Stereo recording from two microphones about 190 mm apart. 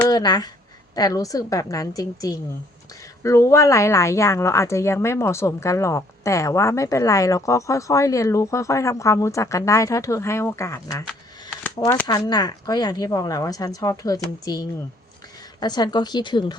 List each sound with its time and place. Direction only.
0.1 s speech: 20° left (ahead or behind)
12.0 s speech: 20° left (ahead or behind)